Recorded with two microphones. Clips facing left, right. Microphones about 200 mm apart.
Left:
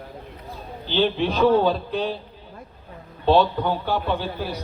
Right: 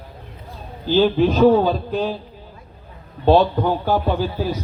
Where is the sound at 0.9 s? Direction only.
45° right (ahead or behind).